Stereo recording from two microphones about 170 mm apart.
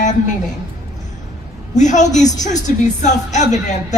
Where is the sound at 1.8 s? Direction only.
45° left (ahead or behind).